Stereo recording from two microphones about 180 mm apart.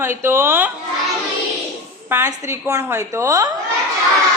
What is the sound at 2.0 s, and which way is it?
A woman's voice, 10° right (ahead or behind).